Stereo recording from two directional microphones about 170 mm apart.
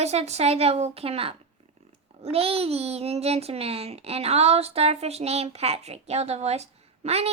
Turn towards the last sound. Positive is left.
turn(degrees=-40)  # may be behind; listen again after turning